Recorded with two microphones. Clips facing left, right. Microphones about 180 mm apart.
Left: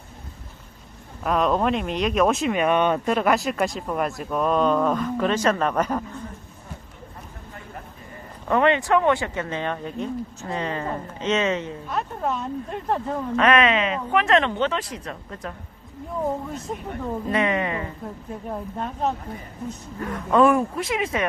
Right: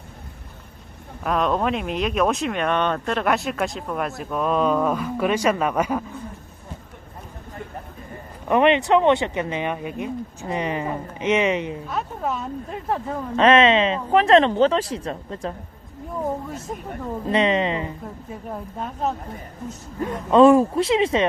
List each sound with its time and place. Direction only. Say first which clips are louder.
1.2 s a man's voice: even; centre (ahead or behind)
8.4 s a man's voice: right 2 dB; 20° right (ahead or behind)
11.9 s speech: left 4 dB; centre (ahead or behind)
13.3 s speech: right 4 dB; 25° right (ahead or behind)
16.5 s speech: even; 5° right (ahead or behind)
17.3 s speech: right 4 dB; 20° right (ahead or behind)
18.3 s speech: left 2 dB; centre (ahead or behind)
20.0 s speech: right 4 dB; 25° right (ahead or behind)